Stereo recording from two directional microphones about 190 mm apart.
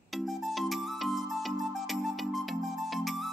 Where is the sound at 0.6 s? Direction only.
Centre (ahead or behind).